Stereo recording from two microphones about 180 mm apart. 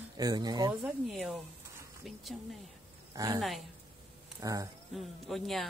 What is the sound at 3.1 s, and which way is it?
Speech, 15° right (ahead or behind).